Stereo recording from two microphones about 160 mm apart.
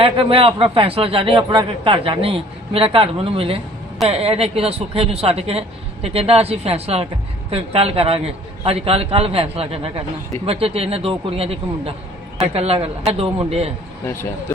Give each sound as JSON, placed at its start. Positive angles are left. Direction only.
{"t": 0.0, "sound": "a man's voice", "side_deg": -35}